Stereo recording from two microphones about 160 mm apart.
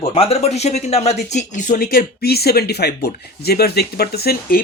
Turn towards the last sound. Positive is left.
turn(degrees=65)  # may be behind; listen again after turning